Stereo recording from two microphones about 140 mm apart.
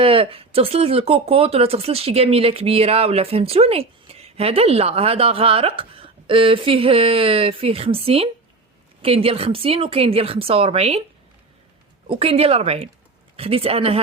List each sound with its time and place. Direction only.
0.0 s speech: 40° right (ahead or behind)
12.0 s speech: 40° right (ahead or behind)